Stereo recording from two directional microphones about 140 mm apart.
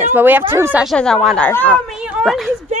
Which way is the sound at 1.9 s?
5° right (ahead or behind).